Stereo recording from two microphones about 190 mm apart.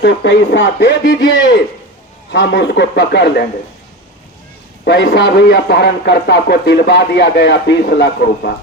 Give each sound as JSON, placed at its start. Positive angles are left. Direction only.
{"t": 0.0, "sound": "speech", "side_deg": 65}
{"t": 4.9, "sound": "speech", "side_deg": 65}